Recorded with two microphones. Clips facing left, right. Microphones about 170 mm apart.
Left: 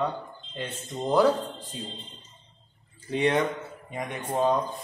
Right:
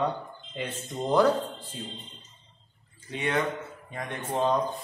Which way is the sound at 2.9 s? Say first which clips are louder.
Left 7 dB; 30° left (ahead or behind).